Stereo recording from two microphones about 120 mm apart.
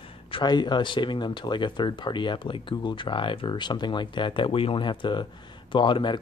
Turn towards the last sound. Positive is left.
turn(degrees=40)  # may be behind; listen again after turning